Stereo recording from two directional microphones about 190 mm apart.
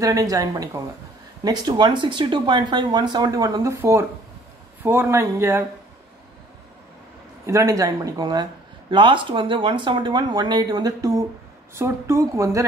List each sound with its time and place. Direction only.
0.0 s speech: 20° right (ahead or behind)
7.4 s speech: 15° right (ahead or behind)